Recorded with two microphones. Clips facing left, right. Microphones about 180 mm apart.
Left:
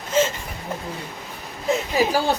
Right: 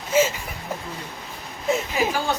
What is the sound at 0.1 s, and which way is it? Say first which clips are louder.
Speech: right 1 dB; 10° right (ahead or behind).